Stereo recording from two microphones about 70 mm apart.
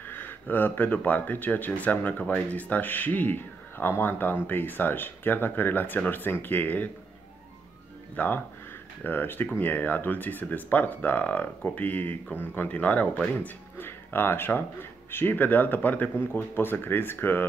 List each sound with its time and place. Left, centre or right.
0.0 s speech: left
8.2 s speech: left